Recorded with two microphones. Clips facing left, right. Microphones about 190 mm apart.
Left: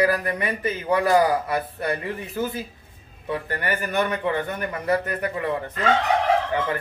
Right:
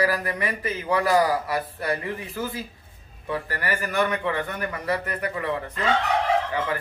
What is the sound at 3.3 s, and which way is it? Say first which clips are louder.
Speech: left 2 dB; 25° left (ahead or behind).